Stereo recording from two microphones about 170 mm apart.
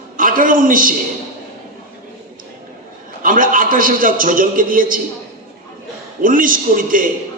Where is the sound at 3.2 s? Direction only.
55° right (ahead or behind).